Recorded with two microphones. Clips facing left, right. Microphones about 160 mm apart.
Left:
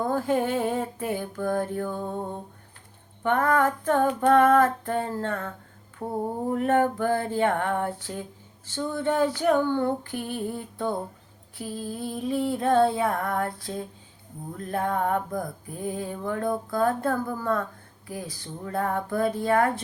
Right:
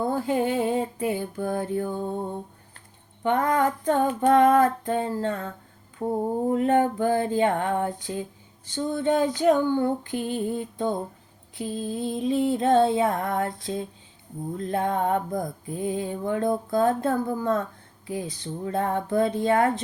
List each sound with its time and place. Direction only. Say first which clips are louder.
0.0 s a sound: even; 15° right (ahead or behind)
3.2 s female singing: even; 20° right (ahead or behind)
11.5 s mantra: right 4 dB; 20° right (ahead or behind)